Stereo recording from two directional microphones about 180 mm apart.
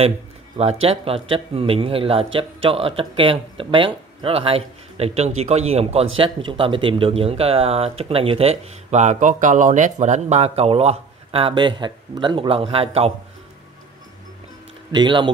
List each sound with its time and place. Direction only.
0.8 s speech: 30° right (ahead or behind)
14.9 s speech: 25° right (ahead or behind)